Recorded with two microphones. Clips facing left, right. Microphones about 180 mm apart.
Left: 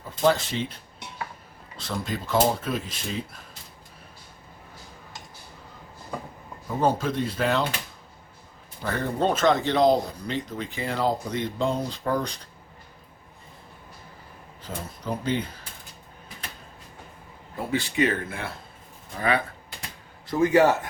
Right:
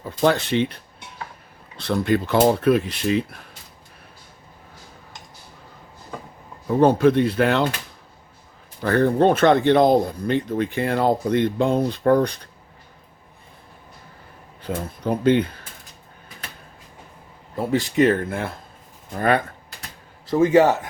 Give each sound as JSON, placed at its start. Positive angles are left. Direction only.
{"t": 0.3, "sound": "speech", "side_deg": -65}
{"t": 1.7, "sound": "speech", "side_deg": -65}
{"t": 6.8, "sound": "speech", "side_deg": -65}
{"t": 8.8, "sound": "speech", "side_deg": -65}
{"t": 14.6, "sound": "speech", "side_deg": -60}
{"t": 17.7, "sound": "speech", "side_deg": -40}
{"t": 20.3, "sound": "a man's voice", "side_deg": -25}